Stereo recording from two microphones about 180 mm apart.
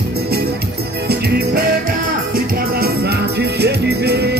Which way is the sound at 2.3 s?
60° right (ahead or behind).